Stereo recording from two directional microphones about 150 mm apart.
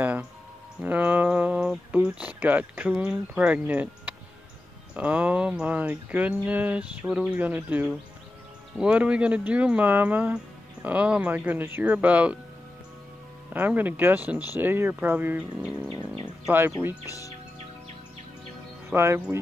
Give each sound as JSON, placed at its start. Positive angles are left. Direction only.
{"t": 0.8, "sound": "speech", "side_deg": -10}
{"t": 13.5, "sound": "speech", "side_deg": -10}
{"t": 17.0, "sound": "speech", "side_deg": 20}
{"t": 18.9, "sound": "speech", "side_deg": -15}